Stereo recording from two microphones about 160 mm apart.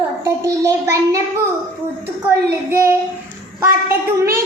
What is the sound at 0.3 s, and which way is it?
Child singing, 20° right (ahead or behind).